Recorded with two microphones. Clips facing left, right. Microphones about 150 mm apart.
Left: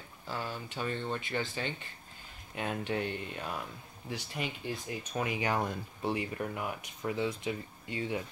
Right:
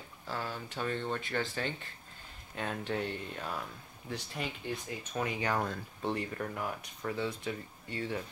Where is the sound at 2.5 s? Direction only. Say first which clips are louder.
Left 1 dB; 10° left (ahead or behind).